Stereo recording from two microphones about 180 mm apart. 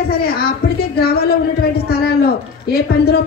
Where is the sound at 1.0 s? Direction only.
60° left (ahead or behind).